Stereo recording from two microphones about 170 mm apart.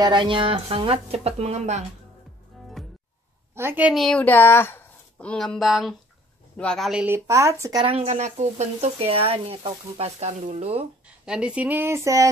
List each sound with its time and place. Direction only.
0.0 s speech: 30° right (ahead or behind)
2.8 s music: centre (ahead or behind)
3.5 s a woman's voice: 10° right (ahead or behind)
7.2 s speech: 15° right (ahead or behind)
7.8 s speech: 35° right (ahead or behind)
11.2 s speech: 5° right (ahead or behind)